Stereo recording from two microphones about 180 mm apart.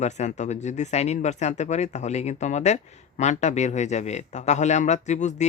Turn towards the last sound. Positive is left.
turn(degrees=40)  # may be behind; listen again after turning